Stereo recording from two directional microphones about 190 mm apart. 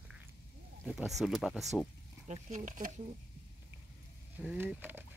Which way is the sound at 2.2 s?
40° right (ahead or behind).